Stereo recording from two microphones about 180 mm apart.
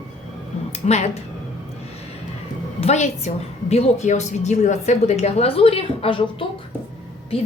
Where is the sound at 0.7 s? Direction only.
40° left (ahead or behind).